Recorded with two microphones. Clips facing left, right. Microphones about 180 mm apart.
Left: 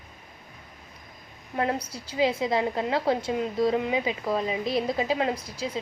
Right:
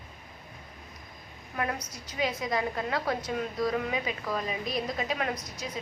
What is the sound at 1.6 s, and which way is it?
A woman's voice, 30° left (ahead or behind).